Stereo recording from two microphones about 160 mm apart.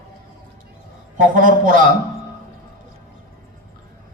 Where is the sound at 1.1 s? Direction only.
55° right (ahead or behind).